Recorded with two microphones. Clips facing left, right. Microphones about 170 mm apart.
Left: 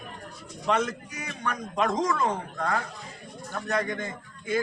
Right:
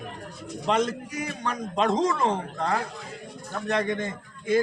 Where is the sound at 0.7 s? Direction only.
35° right (ahead or behind).